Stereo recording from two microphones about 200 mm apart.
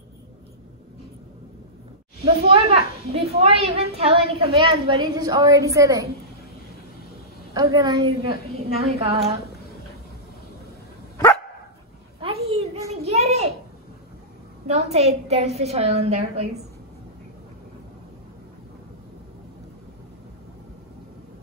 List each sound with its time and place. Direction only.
2.2 s a woman's voice: 30° right (ahead or behind)
7.5 s a woman's voice: 20° right (ahead or behind)
8.3 s a woman's voice: 30° right (ahead or behind)
12.2 s a sound: 30° right (ahead or behind)
14.7 s a woman's voice: 30° right (ahead or behind)